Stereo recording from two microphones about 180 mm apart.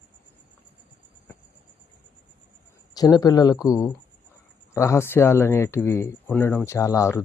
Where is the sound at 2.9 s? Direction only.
20° left (ahead or behind).